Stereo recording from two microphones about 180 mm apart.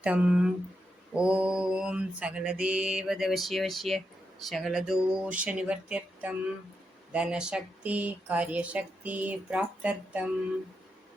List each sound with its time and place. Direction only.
0.0 s speech: 5° right (ahead or behind)
1.1 s mantra: 5° right (ahead or behind)
7.1 s speech: 5° right (ahead or behind)